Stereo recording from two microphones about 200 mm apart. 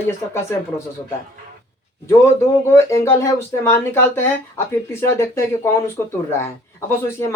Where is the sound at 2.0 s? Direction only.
15° left (ahead or behind).